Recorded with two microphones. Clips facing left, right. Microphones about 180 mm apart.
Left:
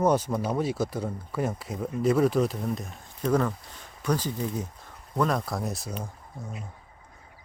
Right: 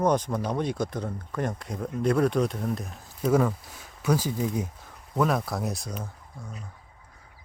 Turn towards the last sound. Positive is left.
turn(degrees=0)  # may be behind; listen again after turning